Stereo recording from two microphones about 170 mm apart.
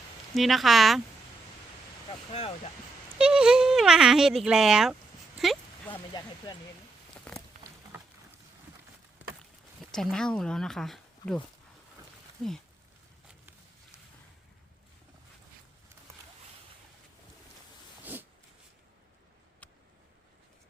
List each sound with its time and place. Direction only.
0.3 s speech: centre (ahead or behind)
3.2 s speech: 5° right (ahead or behind)
5.4 s a sound: centre (ahead or behind)
6.1 s speech: 25° left (ahead or behind)
9.9 s speech: 5° left (ahead or behind)
12.4 s speech: 10° left (ahead or behind)
18.0 s a sound: 10° right (ahead or behind)